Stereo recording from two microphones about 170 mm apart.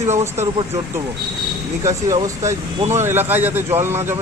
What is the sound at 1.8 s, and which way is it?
Speech, 20° right (ahead or behind).